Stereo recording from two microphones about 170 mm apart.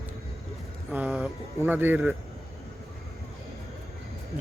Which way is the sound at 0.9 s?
5° right (ahead or behind).